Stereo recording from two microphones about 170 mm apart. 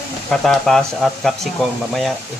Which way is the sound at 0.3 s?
5° left (ahead or behind).